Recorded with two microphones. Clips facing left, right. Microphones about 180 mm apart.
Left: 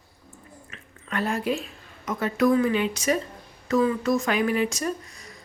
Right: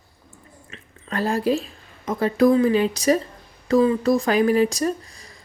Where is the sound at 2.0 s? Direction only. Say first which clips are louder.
Right 5 dB; 30° right (ahead or behind).